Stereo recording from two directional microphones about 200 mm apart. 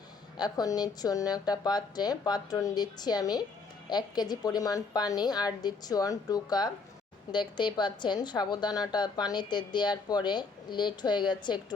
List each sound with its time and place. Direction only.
0.3 s a woman's voice: 20° left (ahead or behind)